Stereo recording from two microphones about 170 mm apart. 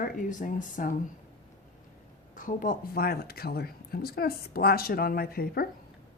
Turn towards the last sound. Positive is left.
turn(degrees=60)  # may be behind; listen again after turning